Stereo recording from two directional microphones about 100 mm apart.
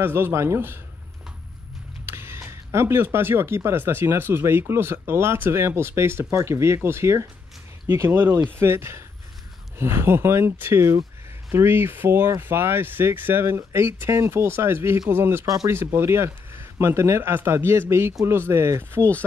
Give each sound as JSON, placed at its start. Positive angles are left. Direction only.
{"t": 0.0, "sound": "speech", "side_deg": -25}
{"t": 2.0, "sound": "speech", "side_deg": -25}
{"t": 15.4, "sound": "speech", "side_deg": -35}
{"t": 15.7, "sound": "speech", "side_deg": -25}